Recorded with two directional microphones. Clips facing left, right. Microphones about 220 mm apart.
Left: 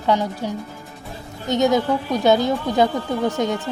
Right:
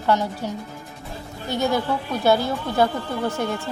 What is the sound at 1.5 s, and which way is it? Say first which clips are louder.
A woman's voice: left 5 dB; 20° left (ahead or behind).